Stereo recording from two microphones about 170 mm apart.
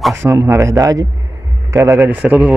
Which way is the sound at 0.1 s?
15° right (ahead or behind).